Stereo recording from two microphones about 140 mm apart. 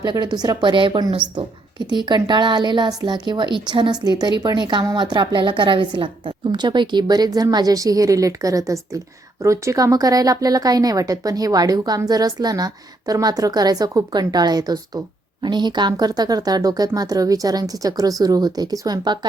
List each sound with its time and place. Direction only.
0.0 s a woman's voice: 30° right (ahead or behind)